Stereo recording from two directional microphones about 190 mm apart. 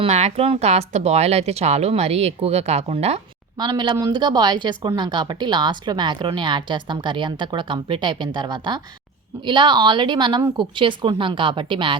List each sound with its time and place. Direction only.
0.0 s a woman's voice: 35° right (ahead or behind)